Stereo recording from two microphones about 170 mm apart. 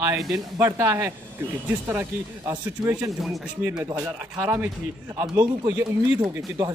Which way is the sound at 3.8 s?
20° right (ahead or behind).